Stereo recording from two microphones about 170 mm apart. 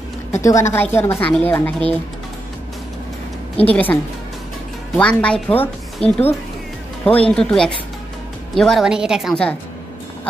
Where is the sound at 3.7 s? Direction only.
10° left (ahead or behind).